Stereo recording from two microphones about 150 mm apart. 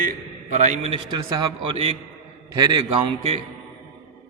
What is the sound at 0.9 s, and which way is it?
A man's voice, 30° right (ahead or behind).